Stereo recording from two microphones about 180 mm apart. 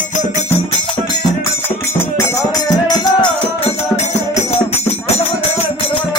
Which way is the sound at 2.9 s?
25° left (ahead or behind).